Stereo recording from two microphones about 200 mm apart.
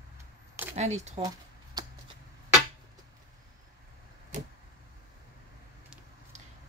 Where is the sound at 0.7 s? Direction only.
35° right (ahead or behind).